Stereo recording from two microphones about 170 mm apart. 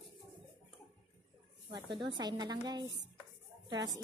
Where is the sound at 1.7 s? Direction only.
30° right (ahead or behind).